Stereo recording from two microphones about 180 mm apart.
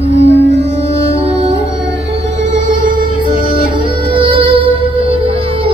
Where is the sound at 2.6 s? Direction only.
45° right (ahead or behind).